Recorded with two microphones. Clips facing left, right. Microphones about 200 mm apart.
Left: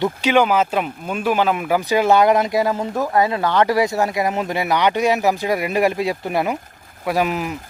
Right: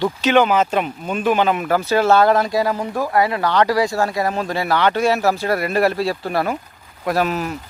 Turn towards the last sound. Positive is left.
turn(degrees=10)  # may be behind; listen again after turning